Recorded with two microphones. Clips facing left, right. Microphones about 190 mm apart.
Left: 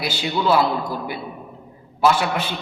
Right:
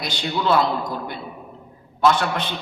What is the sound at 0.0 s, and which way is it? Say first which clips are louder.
A man's voice: left 2 dB; 5° left (ahead or behind).